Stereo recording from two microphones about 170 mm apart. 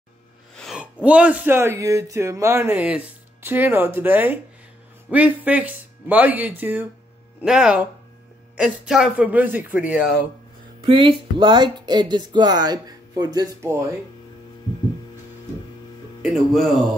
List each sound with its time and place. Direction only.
0.6 s a sound: centre (ahead or behind)
1.0 s speech: 5° right (ahead or behind)
10.9 s speech: 30° right (ahead or behind)
16.2 s speech: centre (ahead or behind)